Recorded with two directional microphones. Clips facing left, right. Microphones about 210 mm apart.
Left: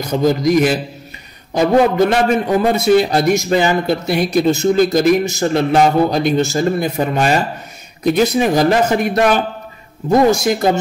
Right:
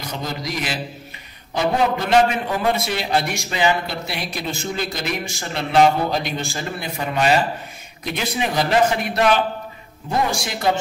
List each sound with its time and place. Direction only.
0.0 s a man's voice: 45° left (ahead or behind)
10.4 s a man's voice: 45° left (ahead or behind)